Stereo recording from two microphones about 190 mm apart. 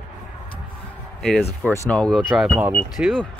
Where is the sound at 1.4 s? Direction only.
15° left (ahead or behind).